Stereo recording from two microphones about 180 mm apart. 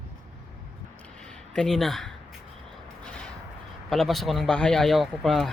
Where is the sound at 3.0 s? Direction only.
5° left (ahead or behind).